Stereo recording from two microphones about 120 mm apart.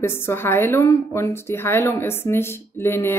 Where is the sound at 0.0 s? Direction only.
20° left (ahead or behind).